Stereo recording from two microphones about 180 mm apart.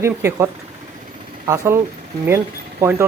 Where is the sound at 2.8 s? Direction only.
15° right (ahead or behind).